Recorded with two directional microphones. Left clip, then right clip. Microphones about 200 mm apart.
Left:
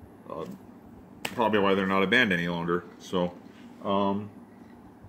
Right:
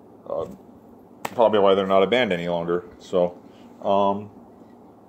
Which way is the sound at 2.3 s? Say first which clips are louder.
Right 4 dB; 20° left (ahead or behind).